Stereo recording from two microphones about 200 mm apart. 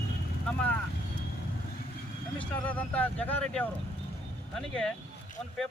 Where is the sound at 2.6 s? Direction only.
5° left (ahead or behind).